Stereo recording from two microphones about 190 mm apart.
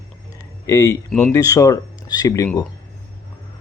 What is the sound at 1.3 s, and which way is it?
Speech, 20° left (ahead or behind).